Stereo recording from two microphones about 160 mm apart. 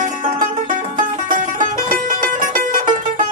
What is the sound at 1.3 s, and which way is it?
Music, 55° right (ahead or behind).